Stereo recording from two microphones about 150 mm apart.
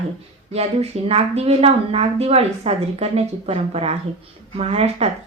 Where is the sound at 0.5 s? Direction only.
40° right (ahead or behind).